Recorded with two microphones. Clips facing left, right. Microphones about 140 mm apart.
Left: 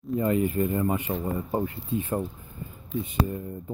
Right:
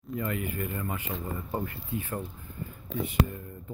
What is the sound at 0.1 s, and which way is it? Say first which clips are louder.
Speech: left 8 dB; 25° left (ahead or behind).